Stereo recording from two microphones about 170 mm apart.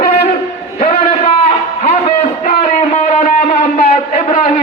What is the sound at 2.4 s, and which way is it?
Music, 45° left (ahead or behind).